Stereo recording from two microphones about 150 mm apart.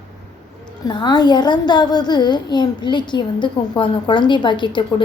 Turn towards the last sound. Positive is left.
turn(degrees=30)  # may be behind; listen again after turning